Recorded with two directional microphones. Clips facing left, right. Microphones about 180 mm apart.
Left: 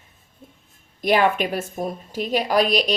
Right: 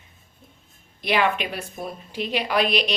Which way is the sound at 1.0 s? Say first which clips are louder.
Left 4 dB; 45° left (ahead or behind).